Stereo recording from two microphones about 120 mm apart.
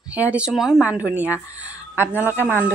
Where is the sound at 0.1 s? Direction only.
10° right (ahead or behind).